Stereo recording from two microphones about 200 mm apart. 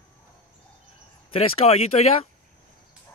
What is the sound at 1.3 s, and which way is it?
Speech, 30° left (ahead or behind).